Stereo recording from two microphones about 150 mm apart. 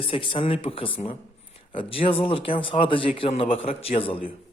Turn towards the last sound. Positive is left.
turn(degrees=40)  # may be behind; listen again after turning